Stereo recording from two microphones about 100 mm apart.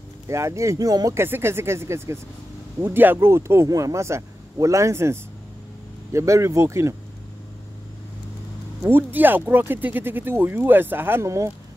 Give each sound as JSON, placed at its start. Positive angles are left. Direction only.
{"t": 0.3, "sound": "speech", "side_deg": -30}
{"t": 1.2, "sound": "speech", "side_deg": -25}
{"t": 8.8, "sound": "speech", "side_deg": -20}